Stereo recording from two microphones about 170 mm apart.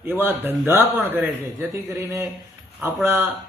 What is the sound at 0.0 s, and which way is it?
Speech, 15° right (ahead or behind).